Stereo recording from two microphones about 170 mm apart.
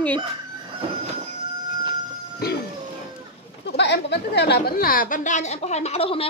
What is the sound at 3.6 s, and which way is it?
A woman's voice, 90° left.